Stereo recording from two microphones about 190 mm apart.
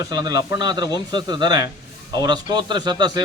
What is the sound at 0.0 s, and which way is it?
A man's voice, 20° right (ahead or behind).